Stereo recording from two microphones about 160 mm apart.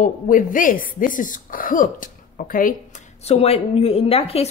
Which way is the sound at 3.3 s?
40° left (ahead or behind).